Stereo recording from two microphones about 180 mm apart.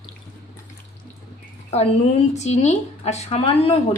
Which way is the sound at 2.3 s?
40° left (ahead or behind).